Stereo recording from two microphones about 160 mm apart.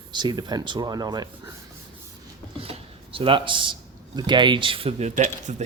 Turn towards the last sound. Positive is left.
turn(degrees=-50)  # may be behind; listen again after turning